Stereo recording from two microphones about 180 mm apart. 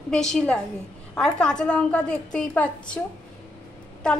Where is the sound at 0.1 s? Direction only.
5° left (ahead or behind).